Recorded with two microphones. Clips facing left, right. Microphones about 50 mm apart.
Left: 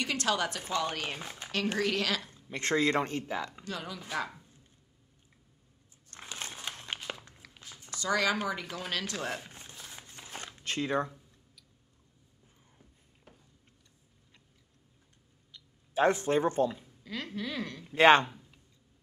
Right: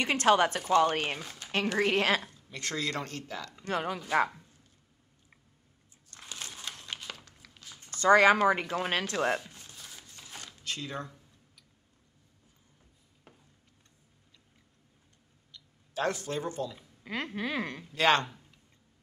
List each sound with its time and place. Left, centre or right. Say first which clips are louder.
0.0 s speech: right 6 dB; right
1.2 s a woman's voice: left 2 dB; left
1.8 s speech: right 6 dB; right
2.3 s speech: left 6 dB; left
3.6 s speech: right 7 dB; right
6.1 s crumpling: left 2 dB; left
7.4 s a sound: left 1 dB; centre
8.0 s speech: right 9 dB; right
9.4 s a sound: left 1 dB; left
15.5 s speech: left 5 dB; left
17.0 s speech: right 3 dB; right
17.9 s speech: left 5 dB; left